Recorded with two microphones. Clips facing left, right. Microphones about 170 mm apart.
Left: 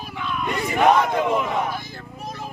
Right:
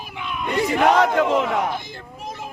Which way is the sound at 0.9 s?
80° right.